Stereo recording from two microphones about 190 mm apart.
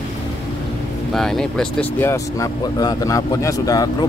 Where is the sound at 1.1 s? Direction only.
Centre (ahead or behind).